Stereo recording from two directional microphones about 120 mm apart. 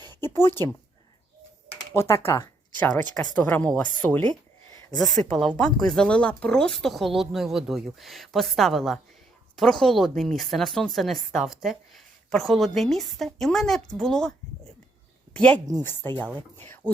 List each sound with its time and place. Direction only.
0.3 s speech: 20° left (ahead or behind)
1.9 s speech: 20° left (ahead or behind)